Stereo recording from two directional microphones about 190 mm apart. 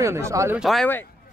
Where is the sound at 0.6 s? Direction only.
Centre (ahead or behind).